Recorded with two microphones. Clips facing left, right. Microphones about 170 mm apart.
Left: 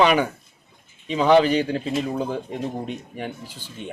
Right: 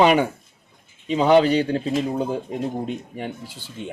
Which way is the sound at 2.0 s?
30° right (ahead or behind).